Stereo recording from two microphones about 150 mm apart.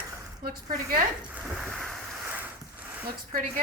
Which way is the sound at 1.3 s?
5° right (ahead or behind).